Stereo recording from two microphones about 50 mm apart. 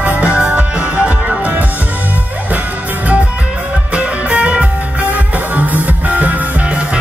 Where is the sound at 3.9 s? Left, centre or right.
Right.